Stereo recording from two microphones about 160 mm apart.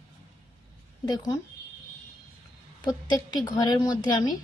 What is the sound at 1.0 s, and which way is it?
Speech, 20° left (ahead or behind).